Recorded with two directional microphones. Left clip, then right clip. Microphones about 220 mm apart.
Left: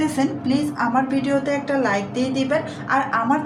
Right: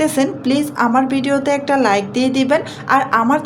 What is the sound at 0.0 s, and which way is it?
A woman's voice, 45° right (ahead or behind).